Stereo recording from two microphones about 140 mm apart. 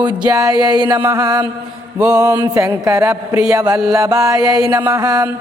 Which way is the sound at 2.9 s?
20° right (ahead or behind).